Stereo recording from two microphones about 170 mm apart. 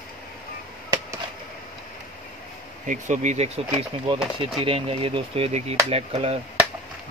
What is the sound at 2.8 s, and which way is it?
Speech, 45° right (ahead or behind).